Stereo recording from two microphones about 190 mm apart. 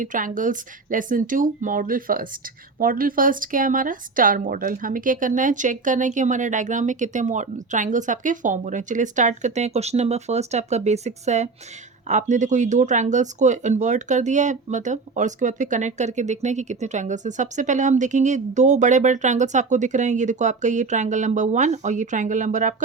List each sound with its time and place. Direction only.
0.0 s speech: 45° right (ahead or behind)